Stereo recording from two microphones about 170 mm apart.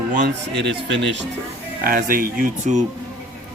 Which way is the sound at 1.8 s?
55° right (ahead or behind).